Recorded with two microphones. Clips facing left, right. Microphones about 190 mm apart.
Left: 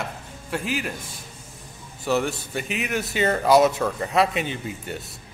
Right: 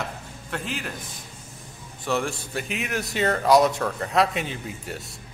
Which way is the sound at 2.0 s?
Centre (ahead or behind).